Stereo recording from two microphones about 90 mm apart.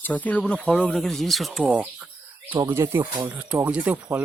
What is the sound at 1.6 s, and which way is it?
Speech, 15° right (ahead or behind).